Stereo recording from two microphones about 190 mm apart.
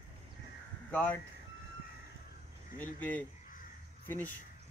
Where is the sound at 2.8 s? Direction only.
10° left (ahead or behind).